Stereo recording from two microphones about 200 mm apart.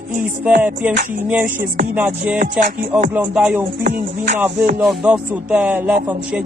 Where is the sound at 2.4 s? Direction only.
40° right (ahead or behind).